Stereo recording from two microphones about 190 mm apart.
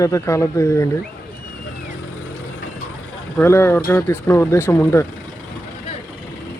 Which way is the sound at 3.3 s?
10° left (ahead or behind).